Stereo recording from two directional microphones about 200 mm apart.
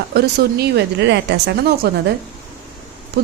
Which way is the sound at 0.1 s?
55° right (ahead or behind).